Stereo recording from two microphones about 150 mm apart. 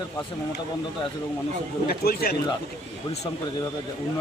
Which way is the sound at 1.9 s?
90° left.